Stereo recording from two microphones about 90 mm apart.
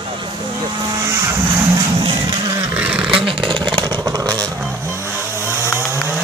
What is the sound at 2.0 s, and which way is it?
Insect, 60° right (ahead or behind).